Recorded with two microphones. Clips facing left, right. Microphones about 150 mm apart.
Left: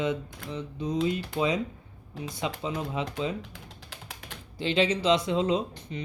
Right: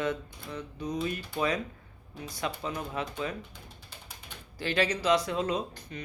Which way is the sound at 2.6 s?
20° left (ahead or behind).